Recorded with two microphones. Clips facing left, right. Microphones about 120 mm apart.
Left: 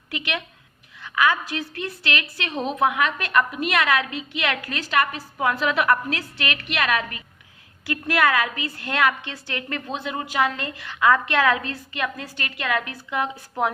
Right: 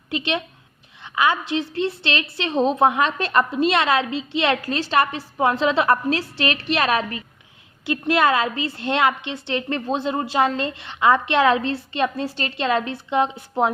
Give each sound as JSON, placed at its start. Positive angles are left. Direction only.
{"t": 0.1, "sound": "a woman's voice", "side_deg": -25}